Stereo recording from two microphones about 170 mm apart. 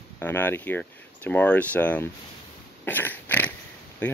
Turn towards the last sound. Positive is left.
turn(degrees=10)  # may be behind; listen again after turning